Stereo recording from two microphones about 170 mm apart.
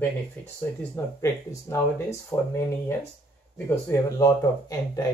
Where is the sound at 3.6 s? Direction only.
15° left (ahead or behind).